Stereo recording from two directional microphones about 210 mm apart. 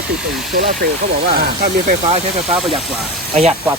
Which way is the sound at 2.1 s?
25° right (ahead or behind).